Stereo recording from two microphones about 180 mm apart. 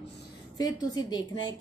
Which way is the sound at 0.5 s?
20° left (ahead or behind).